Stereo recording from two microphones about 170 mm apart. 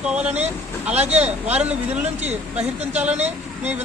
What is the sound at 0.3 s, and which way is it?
Speech, 40° right (ahead or behind).